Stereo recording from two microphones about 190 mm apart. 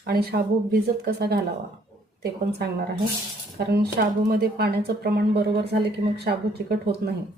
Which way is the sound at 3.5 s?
55° right (ahead or behind).